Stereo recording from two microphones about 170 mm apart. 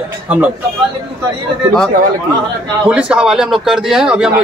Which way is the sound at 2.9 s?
5° right (ahead or behind).